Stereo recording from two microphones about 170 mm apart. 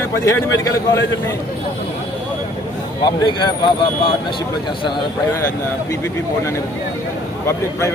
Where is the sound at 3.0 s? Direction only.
25° left (ahead or behind).